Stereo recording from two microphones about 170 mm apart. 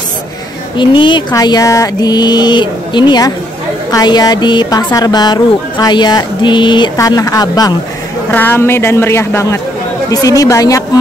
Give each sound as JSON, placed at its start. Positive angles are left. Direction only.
{"t": 0.7, "sound": "speech", "side_deg": 30}
{"t": 8.3, "sound": "speech", "side_deg": 10}